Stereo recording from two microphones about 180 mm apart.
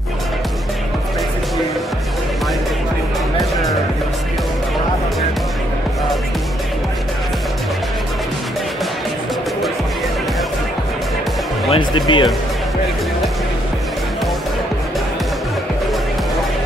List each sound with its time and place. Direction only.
11.7 s speech: 25° left (ahead or behind)